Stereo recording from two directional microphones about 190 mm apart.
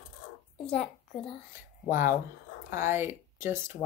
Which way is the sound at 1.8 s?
10° right (ahead or behind).